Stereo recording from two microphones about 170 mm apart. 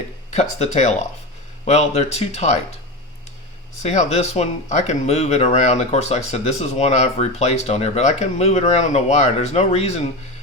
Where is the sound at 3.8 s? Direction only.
40° left (ahead or behind).